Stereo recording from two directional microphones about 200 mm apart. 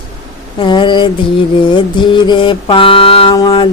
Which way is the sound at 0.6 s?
25° left (ahead or behind).